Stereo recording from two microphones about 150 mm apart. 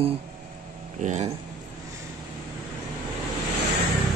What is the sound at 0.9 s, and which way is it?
Speech, 50° right (ahead or behind).